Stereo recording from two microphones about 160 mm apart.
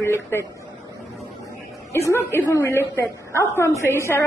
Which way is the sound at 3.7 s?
15° right (ahead or behind).